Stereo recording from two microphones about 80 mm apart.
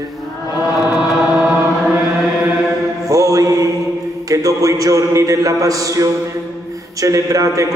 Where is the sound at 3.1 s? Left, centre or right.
Right.